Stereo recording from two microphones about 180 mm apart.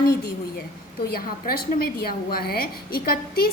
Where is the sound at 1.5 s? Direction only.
55° left (ahead or behind).